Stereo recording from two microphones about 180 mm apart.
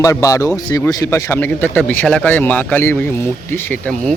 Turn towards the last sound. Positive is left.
turn(degrees=10)  # may be behind; listen again after turning